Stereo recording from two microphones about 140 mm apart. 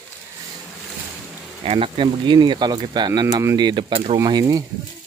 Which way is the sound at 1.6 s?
40° right (ahead or behind).